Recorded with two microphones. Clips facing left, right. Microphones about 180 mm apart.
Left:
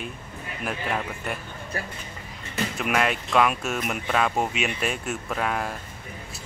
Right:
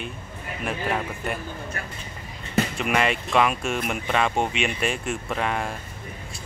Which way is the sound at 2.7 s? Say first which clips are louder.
Right 1 dB; centre (ahead or behind).